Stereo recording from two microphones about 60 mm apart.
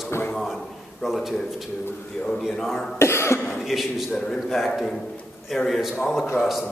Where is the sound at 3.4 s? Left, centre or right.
Centre.